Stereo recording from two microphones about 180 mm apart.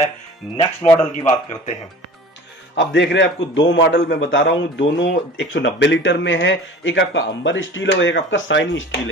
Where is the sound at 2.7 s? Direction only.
80° left.